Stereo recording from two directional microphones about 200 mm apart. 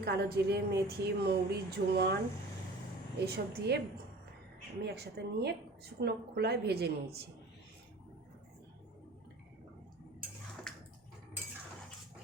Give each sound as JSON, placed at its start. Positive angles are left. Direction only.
{"t": 0.0, "sound": "a woman's voice", "side_deg": -55}
{"t": 3.2, "sound": "a woman's voice", "side_deg": -55}
{"t": 4.8, "sound": "a woman's voice", "side_deg": -55}